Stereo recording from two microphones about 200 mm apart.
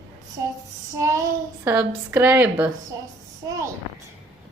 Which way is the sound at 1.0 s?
15° right (ahead or behind).